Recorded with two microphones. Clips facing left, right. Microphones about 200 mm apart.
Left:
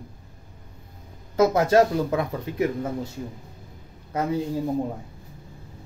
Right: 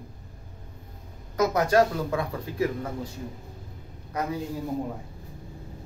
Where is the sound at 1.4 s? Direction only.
25° left (ahead or behind).